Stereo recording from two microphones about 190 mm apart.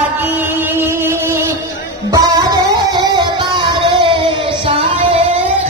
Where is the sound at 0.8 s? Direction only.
10° right (ahead or behind); by 5.2 s 30° right (ahead or behind).